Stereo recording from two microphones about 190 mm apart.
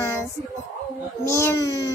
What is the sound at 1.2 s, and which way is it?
Baby cry, 15° left (ahead or behind).